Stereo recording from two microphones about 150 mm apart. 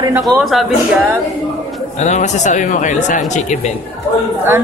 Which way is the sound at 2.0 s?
50° left (ahead or behind).